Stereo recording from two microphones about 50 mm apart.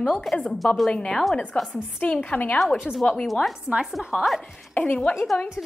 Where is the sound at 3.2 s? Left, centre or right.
Centre.